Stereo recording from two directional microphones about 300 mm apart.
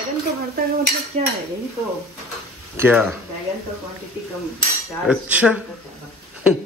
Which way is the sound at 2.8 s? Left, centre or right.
Centre.